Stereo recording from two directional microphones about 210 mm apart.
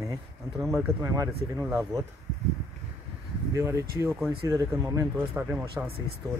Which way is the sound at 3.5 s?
15° right (ahead or behind).